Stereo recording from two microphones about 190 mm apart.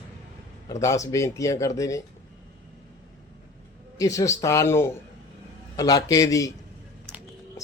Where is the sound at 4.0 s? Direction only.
15° left (ahead or behind).